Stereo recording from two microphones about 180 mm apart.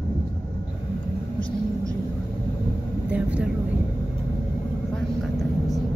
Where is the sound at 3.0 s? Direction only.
5° right (ahead or behind).